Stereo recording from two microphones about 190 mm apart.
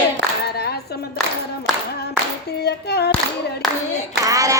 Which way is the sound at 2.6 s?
60° left (ahead or behind).